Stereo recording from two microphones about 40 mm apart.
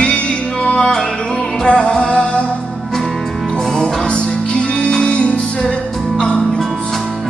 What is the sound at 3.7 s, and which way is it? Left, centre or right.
Music, centre.